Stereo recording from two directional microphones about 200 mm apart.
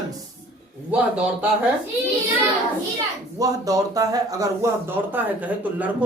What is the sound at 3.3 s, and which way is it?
A man's voice, 15° right (ahead or behind).